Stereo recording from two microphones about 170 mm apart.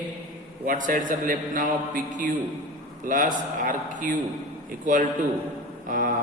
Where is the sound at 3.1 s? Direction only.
50° right (ahead or behind).